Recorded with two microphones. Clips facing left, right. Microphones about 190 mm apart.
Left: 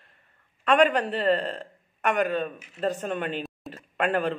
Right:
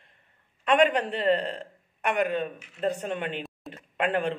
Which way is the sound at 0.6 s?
20° right (ahead or behind).